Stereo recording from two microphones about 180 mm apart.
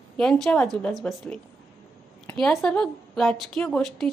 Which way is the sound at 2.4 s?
Centre (ahead or behind).